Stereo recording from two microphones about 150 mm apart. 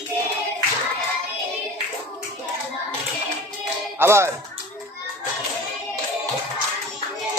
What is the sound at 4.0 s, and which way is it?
Speech, 15° right (ahead or behind).